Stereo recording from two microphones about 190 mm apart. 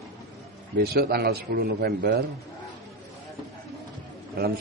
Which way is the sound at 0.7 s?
55° right (ahead or behind).